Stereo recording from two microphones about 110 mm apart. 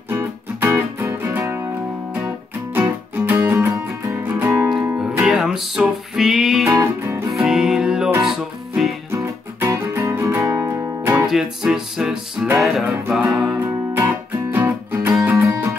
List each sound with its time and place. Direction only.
0.1 s music: 20° right (ahead or behind)
2.7 s music: 20° right (ahead or behind)
5.2 s music: 5° right (ahead or behind)
6.7 s music: 25° right (ahead or behind)
7.4 s music: 5° right (ahead or behind)
9.1 s music: 25° right (ahead or behind)
11.2 s music: 5° right (ahead or behind)
13.6 s music: 20° right (ahead or behind)